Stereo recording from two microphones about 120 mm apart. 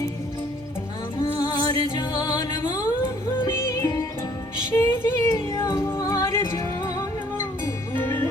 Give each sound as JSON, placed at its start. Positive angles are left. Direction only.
{"t": 1.2, "sound": "music", "side_deg": 30}